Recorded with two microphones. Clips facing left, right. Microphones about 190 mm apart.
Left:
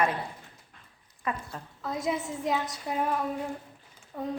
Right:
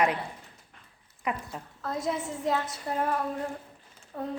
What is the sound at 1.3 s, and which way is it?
Speech, 15° right (ahead or behind).